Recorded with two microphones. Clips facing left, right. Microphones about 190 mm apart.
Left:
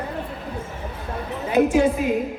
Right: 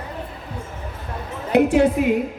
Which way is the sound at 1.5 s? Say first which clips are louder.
Right 2 dB; 65° right (ahead or behind).